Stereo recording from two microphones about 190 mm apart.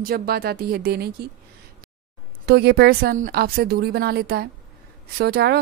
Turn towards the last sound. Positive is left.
turn(degrees=-55)  # may be behind; listen again after turning